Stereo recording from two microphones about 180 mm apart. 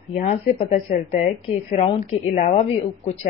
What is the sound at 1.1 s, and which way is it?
A woman's voice, 35° left (ahead or behind).